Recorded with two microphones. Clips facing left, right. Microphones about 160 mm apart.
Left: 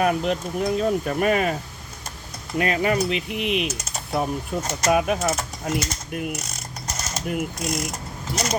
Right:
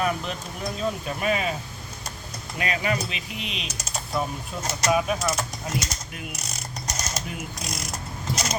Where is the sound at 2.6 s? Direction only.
50° left (ahead or behind).